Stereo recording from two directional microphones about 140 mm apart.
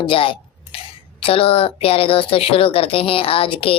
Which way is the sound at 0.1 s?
40° left (ahead or behind).